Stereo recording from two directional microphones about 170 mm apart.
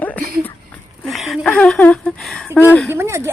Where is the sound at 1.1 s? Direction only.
Centre (ahead or behind).